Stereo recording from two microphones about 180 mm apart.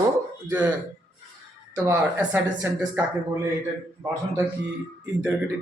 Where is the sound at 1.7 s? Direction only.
10° right (ahead or behind).